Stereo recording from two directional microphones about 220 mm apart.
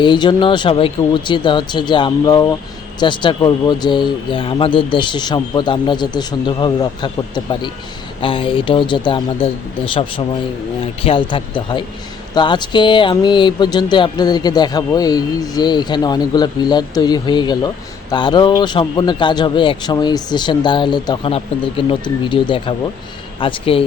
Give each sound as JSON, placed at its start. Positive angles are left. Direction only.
{"t": 0.0, "sound": "speech", "side_deg": 20}